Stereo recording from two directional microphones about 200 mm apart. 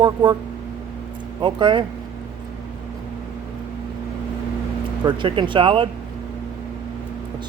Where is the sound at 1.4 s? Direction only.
25° right (ahead or behind).